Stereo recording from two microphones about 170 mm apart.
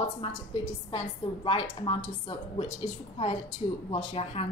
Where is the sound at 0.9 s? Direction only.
30° left (ahead or behind).